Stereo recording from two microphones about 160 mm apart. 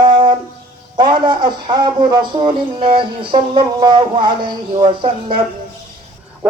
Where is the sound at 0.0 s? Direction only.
30° right (ahead or behind).